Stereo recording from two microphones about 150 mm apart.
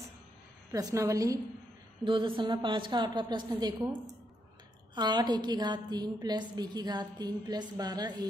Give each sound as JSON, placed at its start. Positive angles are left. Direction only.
{"t": 0.7, "sound": "a woman's voice", "side_deg": -20}
{"t": 2.0, "sound": "a woman's voice", "side_deg": -35}
{"t": 4.9, "sound": "a woman's voice", "side_deg": -30}